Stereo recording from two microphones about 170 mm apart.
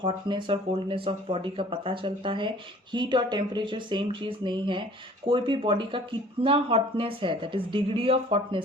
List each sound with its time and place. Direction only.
0.0 s speech: 30° right (ahead or behind)